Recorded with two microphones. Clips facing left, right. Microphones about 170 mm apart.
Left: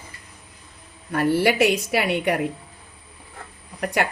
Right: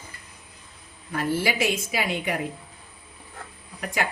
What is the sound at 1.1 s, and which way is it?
A woman's voice, 65° left (ahead or behind).